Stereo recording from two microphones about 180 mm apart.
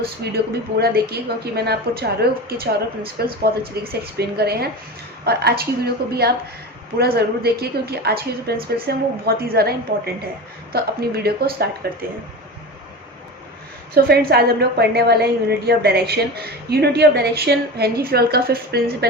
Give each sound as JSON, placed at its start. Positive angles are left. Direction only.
{"t": 0.2, "sound": "a woman's voice", "side_deg": -65}
{"t": 13.9, "sound": "a woman's voice", "side_deg": -60}